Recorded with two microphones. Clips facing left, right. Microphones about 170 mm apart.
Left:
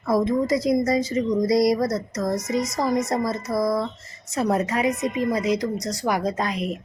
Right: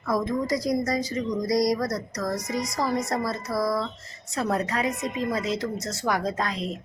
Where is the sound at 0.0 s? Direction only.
25° left (ahead or behind).